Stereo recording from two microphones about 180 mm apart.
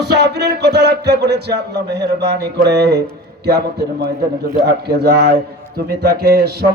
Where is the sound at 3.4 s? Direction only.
65° right (ahead or behind).